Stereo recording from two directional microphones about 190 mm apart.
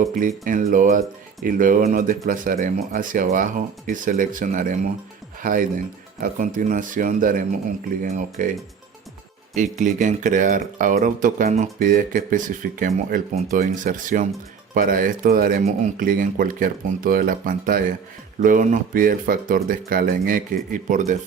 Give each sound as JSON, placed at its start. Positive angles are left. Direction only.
{"t": 0.1, "sound": "speech", "side_deg": -45}
{"t": 9.6, "sound": "speech", "side_deg": -40}